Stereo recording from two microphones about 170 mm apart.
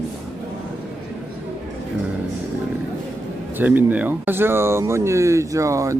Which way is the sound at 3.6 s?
10° right (ahead or behind).